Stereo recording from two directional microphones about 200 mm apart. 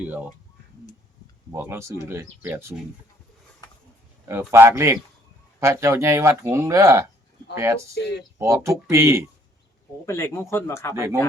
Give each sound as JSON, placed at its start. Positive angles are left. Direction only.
{"t": 0.0, "sound": "speech", "side_deg": -10}
{"t": 1.5, "sound": "speech", "side_deg": -15}
{"t": 4.3, "sound": "speech", "side_deg": -10}
{"t": 8.0, "sound": "speech", "side_deg": 60}
{"t": 8.4, "sound": "speech", "side_deg": -15}
{"t": 10.1, "sound": "speech", "side_deg": 15}
{"t": 10.9, "sound": "speech", "side_deg": -15}